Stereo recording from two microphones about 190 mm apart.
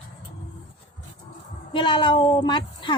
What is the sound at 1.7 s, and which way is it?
A woman's voice, 25° left (ahead or behind).